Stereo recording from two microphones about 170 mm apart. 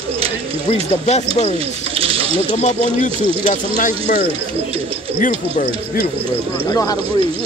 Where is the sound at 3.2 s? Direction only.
30° right (ahead or behind).